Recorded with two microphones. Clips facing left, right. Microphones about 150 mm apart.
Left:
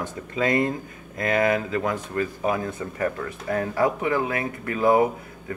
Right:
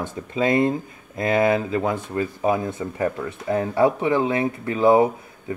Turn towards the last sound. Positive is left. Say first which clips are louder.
# right 2 dB
turn(degrees=-25)  # may be behind; listen again after turning